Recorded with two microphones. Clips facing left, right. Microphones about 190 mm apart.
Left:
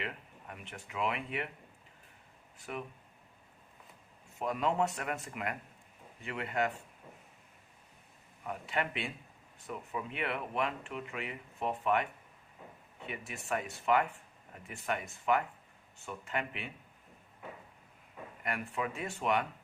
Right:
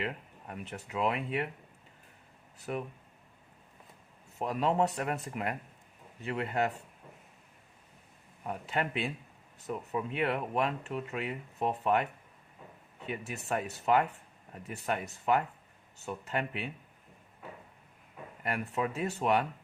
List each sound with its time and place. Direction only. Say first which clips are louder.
0.0 s speech: right 5 dB; 35° right (ahead or behind)
2.7 s speech: right 5 dB; 35° right (ahead or behind)
4.4 s speech: right 3 dB; 35° right (ahead or behind)
8.4 s speech: right 2 dB; 35° right (ahead or behind)
13.1 s speech: right 3 dB; 40° right (ahead or behind)
18.4 s speech: right 4 dB; 35° right (ahead or behind)